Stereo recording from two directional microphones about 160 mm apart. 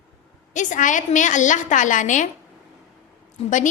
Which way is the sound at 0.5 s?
50° left (ahead or behind).